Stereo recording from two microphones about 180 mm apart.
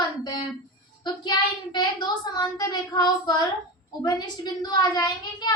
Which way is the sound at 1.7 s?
25° left (ahead or behind).